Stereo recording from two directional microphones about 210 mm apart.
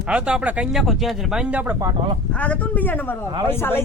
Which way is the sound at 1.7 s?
20° right (ahead or behind).